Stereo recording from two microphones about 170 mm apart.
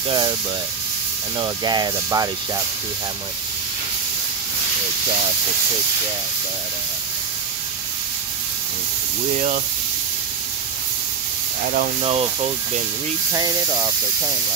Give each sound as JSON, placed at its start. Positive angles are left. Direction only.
{"t": 1.4, "sound": "speech", "side_deg": -25}
{"t": 12.0, "sound": "speech", "side_deg": -35}
{"t": 13.3, "sound": "speech", "side_deg": -20}